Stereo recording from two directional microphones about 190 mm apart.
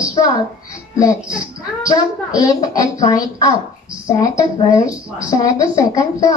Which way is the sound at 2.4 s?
20° left (ahead or behind).